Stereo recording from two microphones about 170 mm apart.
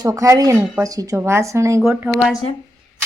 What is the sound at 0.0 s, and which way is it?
Speech, 20° right (ahead or behind).